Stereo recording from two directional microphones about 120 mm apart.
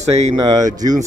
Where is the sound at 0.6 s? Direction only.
30° right (ahead or behind).